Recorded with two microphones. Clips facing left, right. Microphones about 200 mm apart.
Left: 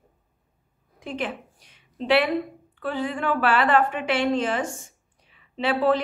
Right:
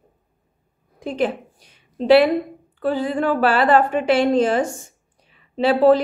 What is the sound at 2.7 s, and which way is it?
A woman's voice, 35° right (ahead or behind).